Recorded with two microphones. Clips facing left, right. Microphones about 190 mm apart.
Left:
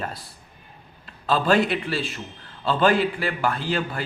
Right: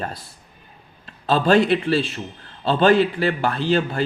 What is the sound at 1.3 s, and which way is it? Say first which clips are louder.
Speech: right 4 dB; 30° right (ahead or behind).